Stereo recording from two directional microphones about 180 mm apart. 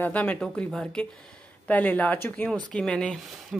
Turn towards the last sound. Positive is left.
turn(degrees=0)  # may be behind; listen again after turning